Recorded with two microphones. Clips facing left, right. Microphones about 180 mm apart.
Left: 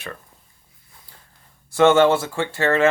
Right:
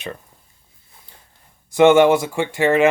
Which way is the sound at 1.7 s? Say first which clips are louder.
Right 3 dB; 15° right (ahead or behind).